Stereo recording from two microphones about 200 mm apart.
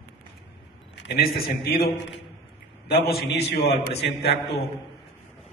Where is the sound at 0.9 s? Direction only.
55° left (ahead or behind).